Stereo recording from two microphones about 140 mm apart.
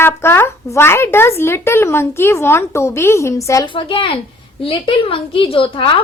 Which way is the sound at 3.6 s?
35° left (ahead or behind).